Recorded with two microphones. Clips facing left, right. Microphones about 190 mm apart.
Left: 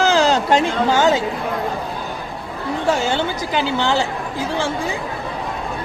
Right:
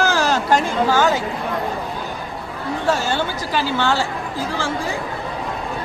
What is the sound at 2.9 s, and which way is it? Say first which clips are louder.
A woman's voice: left 1 dB; 15° left (ahead or behind).